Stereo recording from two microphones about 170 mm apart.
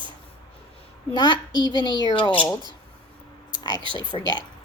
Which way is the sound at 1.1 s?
25° left (ahead or behind).